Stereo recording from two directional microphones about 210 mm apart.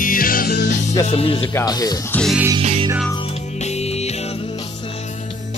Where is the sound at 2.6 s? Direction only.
30° right (ahead or behind).